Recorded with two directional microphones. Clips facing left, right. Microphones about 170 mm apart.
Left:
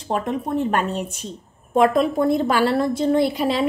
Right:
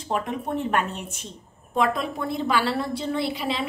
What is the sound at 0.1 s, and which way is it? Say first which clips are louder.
A woman's voice: left 4 dB; 40° left (ahead or behind).